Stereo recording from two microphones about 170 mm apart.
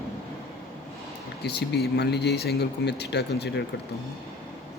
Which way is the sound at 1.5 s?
75° left (ahead or behind).